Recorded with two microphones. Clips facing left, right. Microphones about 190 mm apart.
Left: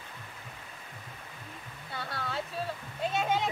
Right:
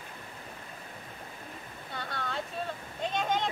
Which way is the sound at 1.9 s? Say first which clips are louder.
Even; 5° left (ahead or behind).